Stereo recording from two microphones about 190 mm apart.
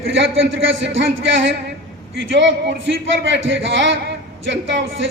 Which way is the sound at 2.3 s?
70° right (ahead or behind).